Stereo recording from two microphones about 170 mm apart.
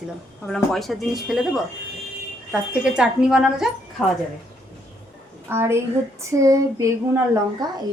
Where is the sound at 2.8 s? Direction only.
5° right (ahead or behind).